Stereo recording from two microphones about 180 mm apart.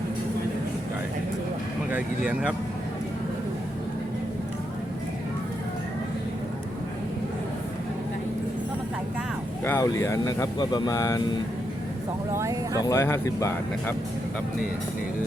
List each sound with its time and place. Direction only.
1.9 s speech: 5° right (ahead or behind)
9.6 s speech: 15° left (ahead or behind)
12.3 s speech: 15° right (ahead or behind)
12.8 s speech: 15° left (ahead or behind)